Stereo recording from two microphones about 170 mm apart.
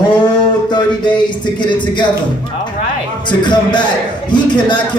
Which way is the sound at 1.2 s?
25° left (ahead or behind).